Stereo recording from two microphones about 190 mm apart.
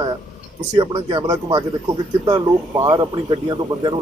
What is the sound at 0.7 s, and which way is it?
Speech, 25° right (ahead or behind).